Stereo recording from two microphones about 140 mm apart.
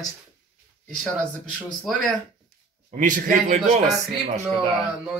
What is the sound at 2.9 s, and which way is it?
A man's voice, 65° right (ahead or behind).